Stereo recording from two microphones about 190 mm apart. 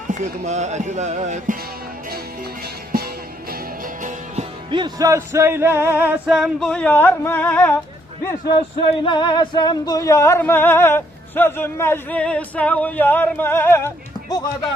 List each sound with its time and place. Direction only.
0.1 s speech: 35° right (ahead or behind)
3.5 s music: 45° right (ahead or behind)
4.7 s music: 20° right (ahead or behind); by 7.8 s 10° left (ahead or behind)
8.8 s a sound: 25° left (ahead or behind)